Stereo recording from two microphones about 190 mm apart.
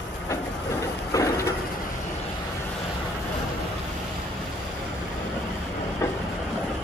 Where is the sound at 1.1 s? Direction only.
15° left (ahead or behind).